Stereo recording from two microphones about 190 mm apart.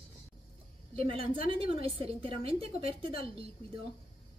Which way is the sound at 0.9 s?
30° right (ahead or behind).